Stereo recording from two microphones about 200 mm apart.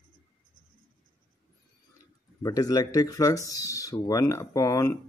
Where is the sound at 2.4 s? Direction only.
20° left (ahead or behind).